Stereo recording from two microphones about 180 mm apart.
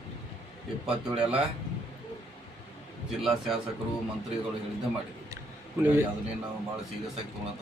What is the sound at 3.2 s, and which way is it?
Speech, centre (ahead or behind).